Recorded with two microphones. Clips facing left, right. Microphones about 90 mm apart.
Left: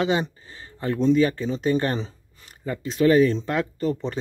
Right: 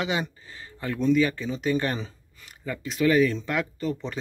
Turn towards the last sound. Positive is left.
turn(degrees=35)  # may be behind; listen again after turning